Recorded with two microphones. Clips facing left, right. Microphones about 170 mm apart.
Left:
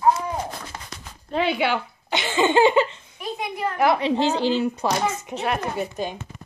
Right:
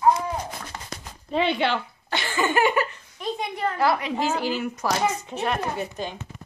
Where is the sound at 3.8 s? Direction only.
25° left (ahead or behind).